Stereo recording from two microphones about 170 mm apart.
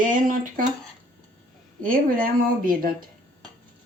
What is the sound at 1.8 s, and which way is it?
Speech, 55° right (ahead or behind).